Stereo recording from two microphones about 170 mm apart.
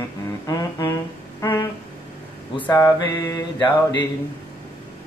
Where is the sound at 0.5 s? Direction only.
20° left (ahead or behind).